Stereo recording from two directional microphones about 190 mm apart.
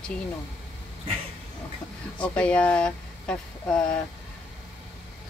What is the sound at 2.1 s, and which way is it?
Speech, 5° left (ahead or behind).